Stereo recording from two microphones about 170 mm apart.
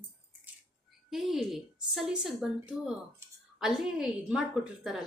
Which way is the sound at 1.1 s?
Centre (ahead or behind).